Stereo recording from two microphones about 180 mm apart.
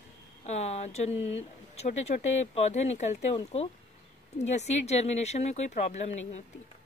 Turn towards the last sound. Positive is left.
turn(degrees=40)  # may be behind; listen again after turning